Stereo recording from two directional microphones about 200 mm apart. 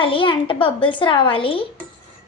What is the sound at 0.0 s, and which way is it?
A woman's voice, 25° left (ahead or behind).